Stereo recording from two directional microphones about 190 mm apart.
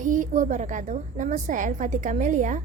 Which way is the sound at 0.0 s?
40° right (ahead or behind).